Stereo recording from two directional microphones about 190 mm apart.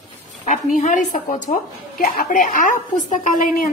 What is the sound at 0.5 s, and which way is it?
A woman's voice, 40° left (ahead or behind).